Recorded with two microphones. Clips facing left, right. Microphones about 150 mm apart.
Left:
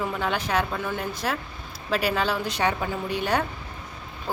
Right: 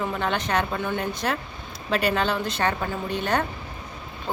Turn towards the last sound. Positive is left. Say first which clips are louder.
# even
turn(degrees=10)  # may be behind; listen again after turning